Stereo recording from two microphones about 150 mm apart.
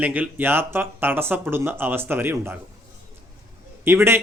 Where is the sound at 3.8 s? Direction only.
15° right (ahead or behind).